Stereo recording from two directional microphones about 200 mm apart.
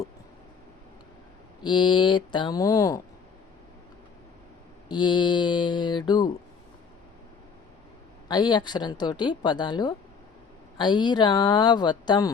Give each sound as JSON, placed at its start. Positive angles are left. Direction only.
{"t": 1.6, "sound": "a woman's voice", "side_deg": 20}
{"t": 4.9, "sound": "a woman's voice", "side_deg": 20}
{"t": 8.3, "sound": "a woman's voice", "side_deg": 20}